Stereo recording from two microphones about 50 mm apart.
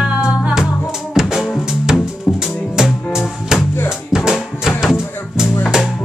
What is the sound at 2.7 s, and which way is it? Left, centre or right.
Music, centre.